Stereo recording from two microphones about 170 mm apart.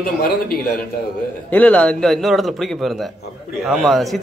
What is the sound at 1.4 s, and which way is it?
A man's voice, 10° left (ahead or behind).